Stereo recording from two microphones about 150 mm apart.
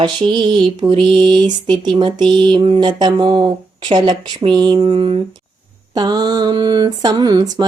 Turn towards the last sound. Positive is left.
turn(degrees=-25)  # may be behind; listen again after turning